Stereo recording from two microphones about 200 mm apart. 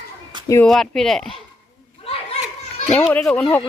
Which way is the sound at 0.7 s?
Centre (ahead or behind).